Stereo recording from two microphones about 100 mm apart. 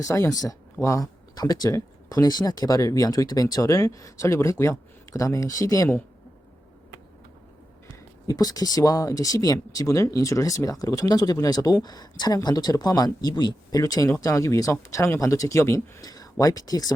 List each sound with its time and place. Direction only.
0.0 s speech: 35° left (ahead or behind)
8.3 s speech: 40° left (ahead or behind)